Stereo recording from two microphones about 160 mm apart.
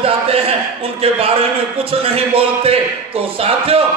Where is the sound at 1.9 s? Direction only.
35° right (ahead or behind).